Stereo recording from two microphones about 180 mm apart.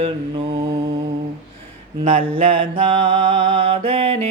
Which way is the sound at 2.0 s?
45° right (ahead or behind).